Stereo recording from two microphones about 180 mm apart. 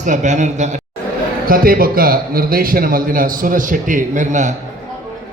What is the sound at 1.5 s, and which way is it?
A man's voice, 55° right (ahead or behind).